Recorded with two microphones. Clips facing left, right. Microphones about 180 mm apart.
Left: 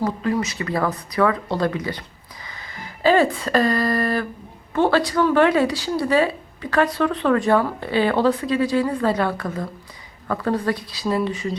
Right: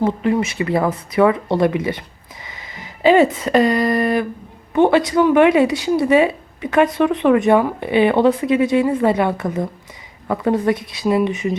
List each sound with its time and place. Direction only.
0.0 s a woman's voice: 25° right (ahead or behind)